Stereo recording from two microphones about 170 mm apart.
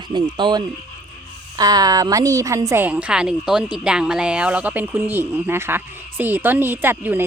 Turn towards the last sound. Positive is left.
turn(degrees=-10)  # may be behind; listen again after turning